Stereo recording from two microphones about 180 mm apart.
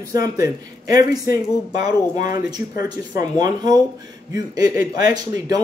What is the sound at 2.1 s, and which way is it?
Speech, 50° left (ahead or behind).